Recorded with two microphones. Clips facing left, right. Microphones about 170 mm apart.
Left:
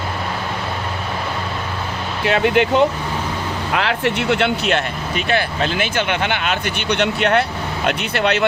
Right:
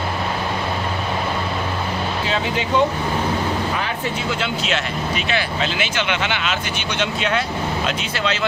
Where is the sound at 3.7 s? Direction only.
75° left (ahead or behind).